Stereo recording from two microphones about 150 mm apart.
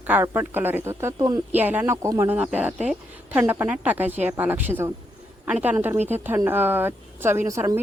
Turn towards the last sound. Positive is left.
turn(degrees=-20)  # may be behind; listen again after turning